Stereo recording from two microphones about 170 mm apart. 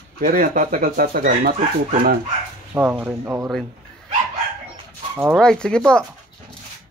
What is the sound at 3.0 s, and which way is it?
Speech, 15° right (ahead or behind).